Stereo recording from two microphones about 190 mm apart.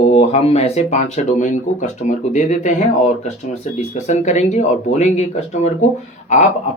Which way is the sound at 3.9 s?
40° left (ahead or behind).